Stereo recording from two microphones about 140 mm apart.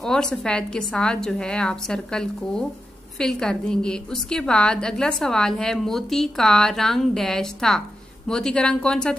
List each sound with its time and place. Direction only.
0.0 s a woman's voice: 5° left (ahead or behind)